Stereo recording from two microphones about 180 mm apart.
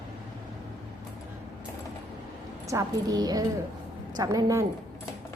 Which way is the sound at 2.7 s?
20° right (ahead or behind).